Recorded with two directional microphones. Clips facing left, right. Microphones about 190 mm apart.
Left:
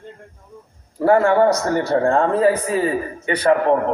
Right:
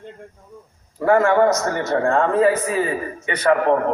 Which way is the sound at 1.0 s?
30° left (ahead or behind).